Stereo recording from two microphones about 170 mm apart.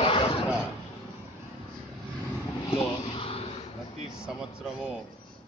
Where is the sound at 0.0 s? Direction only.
30° left (ahead or behind).